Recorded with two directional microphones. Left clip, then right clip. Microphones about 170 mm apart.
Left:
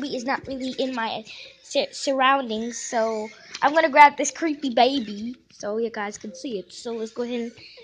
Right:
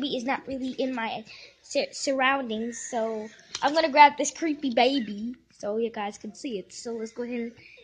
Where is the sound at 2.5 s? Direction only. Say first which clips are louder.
Left 5 dB; 25° left (ahead or behind).